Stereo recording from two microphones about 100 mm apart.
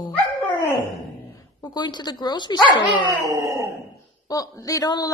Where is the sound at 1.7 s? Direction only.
45° left (ahead or behind).